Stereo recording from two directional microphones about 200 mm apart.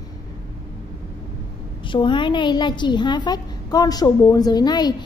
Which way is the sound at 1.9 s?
25° left (ahead or behind).